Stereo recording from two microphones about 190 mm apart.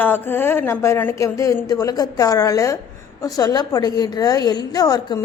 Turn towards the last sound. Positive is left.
turn(degrees=20)  # may be behind; listen again after turning